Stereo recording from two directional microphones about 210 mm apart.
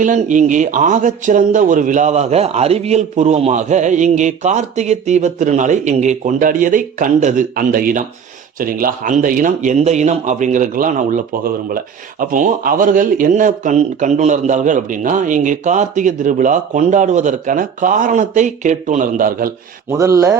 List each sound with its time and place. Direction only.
0.0 s speech: 35° right (ahead or behind)
19.9 s a man's voice: 15° right (ahead or behind)